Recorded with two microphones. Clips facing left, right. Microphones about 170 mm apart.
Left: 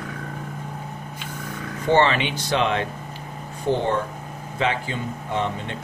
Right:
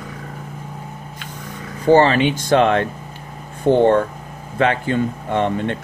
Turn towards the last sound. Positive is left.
turn(degrees=-60)  # may be behind; listen again after turning